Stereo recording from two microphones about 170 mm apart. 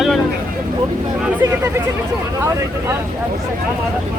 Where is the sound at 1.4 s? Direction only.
15° right (ahead or behind).